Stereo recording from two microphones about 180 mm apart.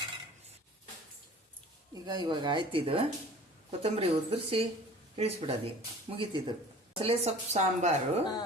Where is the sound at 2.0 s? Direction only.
25° right (ahead or behind).